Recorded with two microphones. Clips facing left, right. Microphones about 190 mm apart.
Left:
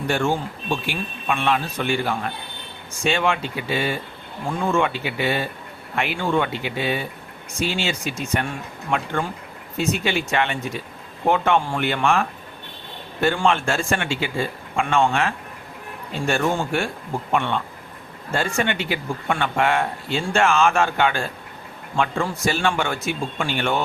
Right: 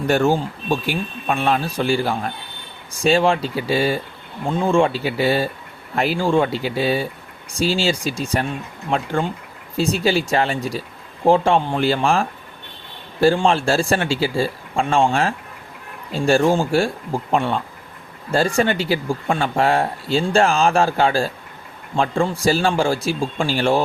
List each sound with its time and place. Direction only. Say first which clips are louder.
0.1 s speech: right 5 dB; 40° right (ahead or behind)